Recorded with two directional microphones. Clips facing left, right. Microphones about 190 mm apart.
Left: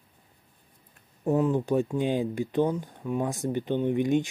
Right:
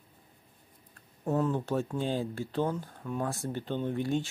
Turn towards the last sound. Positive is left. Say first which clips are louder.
# left 6 dB
turn(degrees=15)  # may be behind; listen again after turning